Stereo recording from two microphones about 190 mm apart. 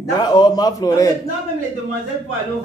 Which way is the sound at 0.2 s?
20° left (ahead or behind).